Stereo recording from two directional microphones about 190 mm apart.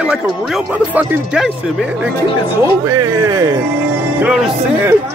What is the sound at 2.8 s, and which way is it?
Speech, 15° right (ahead or behind).